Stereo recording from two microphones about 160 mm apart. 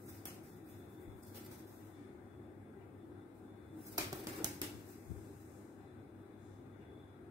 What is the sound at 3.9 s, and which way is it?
Typewriter, 25° right (ahead or behind).